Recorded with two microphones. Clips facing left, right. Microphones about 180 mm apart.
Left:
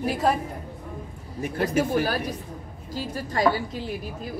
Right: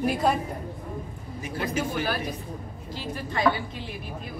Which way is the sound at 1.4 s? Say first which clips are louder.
Left 5 dB; 55° left (ahead or behind).